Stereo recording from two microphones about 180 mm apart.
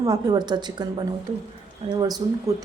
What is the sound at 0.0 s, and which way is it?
A woman's voice, 20° right (ahead or behind).